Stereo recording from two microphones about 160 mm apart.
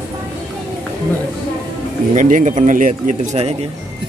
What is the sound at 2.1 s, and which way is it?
Speech, 50° right (ahead or behind).